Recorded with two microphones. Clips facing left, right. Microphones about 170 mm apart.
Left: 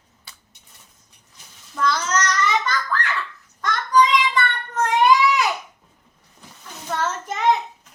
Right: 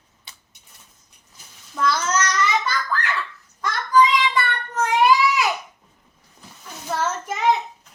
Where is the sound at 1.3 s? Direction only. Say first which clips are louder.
Even; 5° right (ahead or behind).